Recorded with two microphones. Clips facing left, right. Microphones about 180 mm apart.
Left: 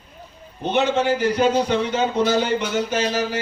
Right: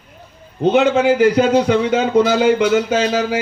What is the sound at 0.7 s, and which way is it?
A man's voice, 90° right.